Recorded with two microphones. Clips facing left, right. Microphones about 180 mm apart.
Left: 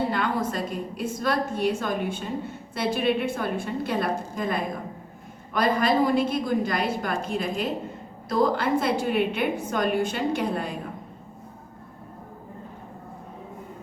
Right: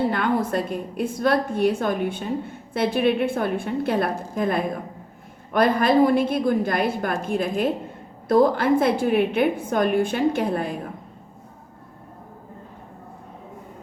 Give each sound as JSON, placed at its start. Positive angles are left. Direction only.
{"t": 0.1, "sound": "a woman's voice", "side_deg": -55}